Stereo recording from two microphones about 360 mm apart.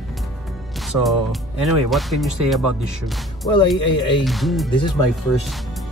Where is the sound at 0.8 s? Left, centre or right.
Centre.